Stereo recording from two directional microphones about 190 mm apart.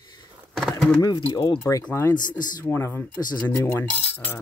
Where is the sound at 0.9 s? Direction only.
25° left (ahead or behind).